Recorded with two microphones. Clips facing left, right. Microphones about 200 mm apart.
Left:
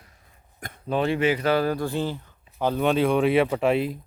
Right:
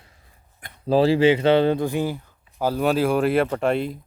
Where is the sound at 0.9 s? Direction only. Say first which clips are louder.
Right 6 dB; 30° right (ahead or behind).